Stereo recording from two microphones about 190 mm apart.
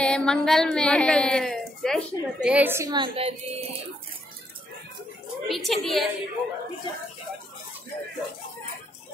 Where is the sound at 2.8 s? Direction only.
25° right (ahead or behind).